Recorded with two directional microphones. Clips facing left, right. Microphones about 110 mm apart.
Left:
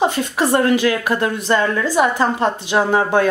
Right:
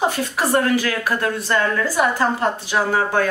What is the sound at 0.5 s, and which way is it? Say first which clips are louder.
A woman's voice: left 3 dB; 20° left (ahead or behind).